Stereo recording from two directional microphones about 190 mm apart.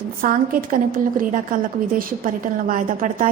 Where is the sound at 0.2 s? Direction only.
50° right (ahead or behind).